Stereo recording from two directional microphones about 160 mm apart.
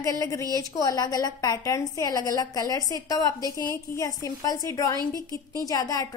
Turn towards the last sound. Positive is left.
turn(degrees=20)  # may be behind; listen again after turning